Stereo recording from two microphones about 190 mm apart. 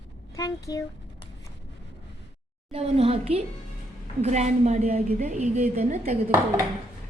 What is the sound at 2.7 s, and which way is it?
A woman's voice, 30° right (ahead or behind).